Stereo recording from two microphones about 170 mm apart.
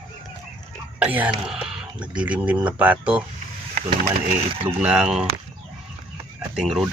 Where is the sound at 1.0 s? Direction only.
10° right (ahead or behind).